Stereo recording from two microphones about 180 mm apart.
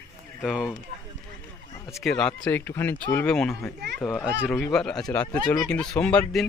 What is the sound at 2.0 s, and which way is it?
Speech, 5° left (ahead or behind).